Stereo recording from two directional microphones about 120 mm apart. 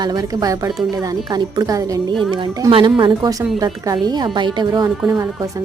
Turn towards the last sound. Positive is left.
turn(degrees=-35)  # may be behind; listen again after turning